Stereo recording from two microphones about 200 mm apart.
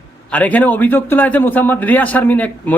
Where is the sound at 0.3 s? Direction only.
5° left (ahead or behind).